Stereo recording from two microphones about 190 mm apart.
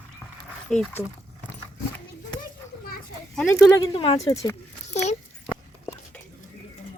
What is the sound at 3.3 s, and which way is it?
Speech, 10° left (ahead or behind).